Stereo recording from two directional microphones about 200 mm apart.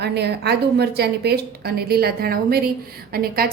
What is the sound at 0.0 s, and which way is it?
A woman's voice, 55° right (ahead or behind).